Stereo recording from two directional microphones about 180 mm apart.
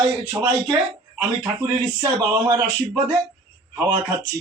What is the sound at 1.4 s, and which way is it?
Speech, 20° right (ahead or behind).